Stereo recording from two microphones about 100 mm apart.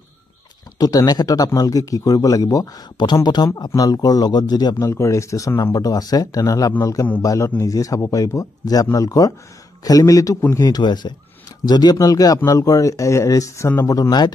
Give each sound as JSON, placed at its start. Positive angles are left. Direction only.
{"t": 0.7, "sound": "a man's voice", "side_deg": 40}
{"t": 13.9, "sound": "a man's voice", "side_deg": 40}